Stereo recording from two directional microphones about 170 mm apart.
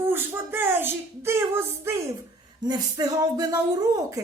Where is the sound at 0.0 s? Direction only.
10° right (ahead or behind).